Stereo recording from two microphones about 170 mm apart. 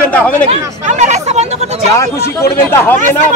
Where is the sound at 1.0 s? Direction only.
40° right (ahead or behind).